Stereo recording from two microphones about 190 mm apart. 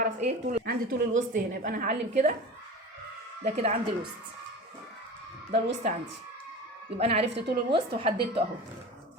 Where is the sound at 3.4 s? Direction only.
35° right (ahead or behind).